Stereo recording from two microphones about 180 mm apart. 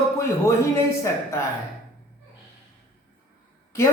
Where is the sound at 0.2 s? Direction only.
15° left (ahead or behind).